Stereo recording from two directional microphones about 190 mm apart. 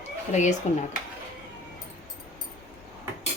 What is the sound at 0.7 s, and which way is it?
Speech, 35° left (ahead or behind).